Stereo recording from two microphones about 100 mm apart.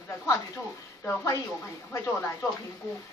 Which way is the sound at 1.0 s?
30° left (ahead or behind).